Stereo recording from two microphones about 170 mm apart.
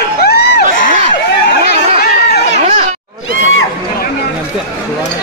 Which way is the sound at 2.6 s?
40° right (ahead or behind).